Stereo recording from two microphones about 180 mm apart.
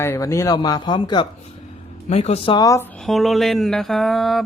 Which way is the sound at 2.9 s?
Centre (ahead or behind).